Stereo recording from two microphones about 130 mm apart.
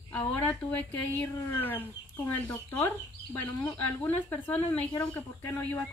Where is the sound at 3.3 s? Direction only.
15° left (ahead or behind).